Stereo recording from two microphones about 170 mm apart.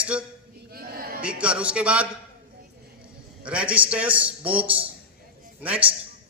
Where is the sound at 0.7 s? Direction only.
60° right (ahead or behind).